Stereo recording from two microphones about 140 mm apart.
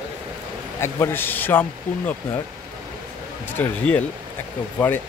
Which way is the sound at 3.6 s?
10° left (ahead or behind).